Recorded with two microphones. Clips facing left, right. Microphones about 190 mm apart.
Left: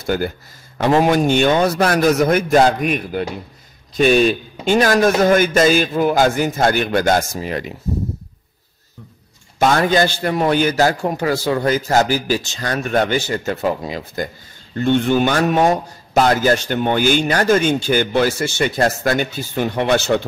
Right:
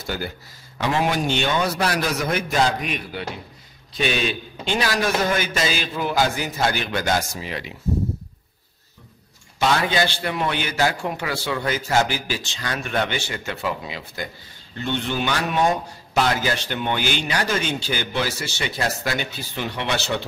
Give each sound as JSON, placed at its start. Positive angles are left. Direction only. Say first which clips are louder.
{"t": 0.0, "sound": "a man's voice", "louder": "left 9 dB", "side_deg": 50}
{"t": 9.6, "sound": "a man's voice", "louder": "left 6 dB", "side_deg": 45}